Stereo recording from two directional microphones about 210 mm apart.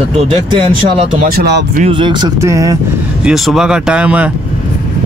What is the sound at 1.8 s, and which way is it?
Speech, 25° right (ahead or behind).